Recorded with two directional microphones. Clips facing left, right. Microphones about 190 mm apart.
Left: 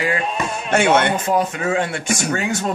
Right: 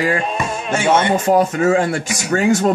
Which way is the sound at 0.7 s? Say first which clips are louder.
Even; 65° left (ahead or behind).